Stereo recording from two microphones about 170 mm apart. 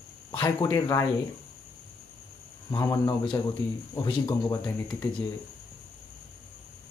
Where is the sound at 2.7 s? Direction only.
20° left (ahead or behind).